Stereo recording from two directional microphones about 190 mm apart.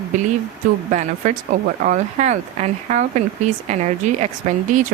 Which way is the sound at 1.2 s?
40° right (ahead or behind).